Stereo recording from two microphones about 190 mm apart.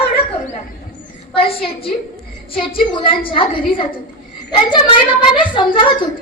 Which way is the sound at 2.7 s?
25° left (ahead or behind).